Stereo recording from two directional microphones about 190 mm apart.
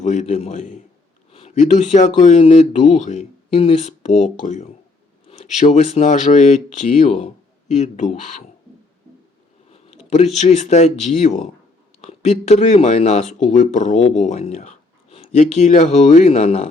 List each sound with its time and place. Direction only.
0.0 s speech: 40° left (ahead or behind)
9.7 s speech: 35° left (ahead or behind)